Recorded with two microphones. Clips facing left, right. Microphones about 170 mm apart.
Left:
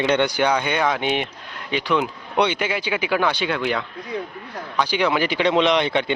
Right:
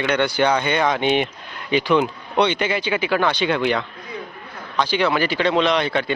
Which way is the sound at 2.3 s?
10° left (ahead or behind).